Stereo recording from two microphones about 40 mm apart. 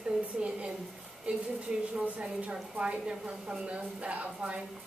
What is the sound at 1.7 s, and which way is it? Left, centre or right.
A woman's voice, right.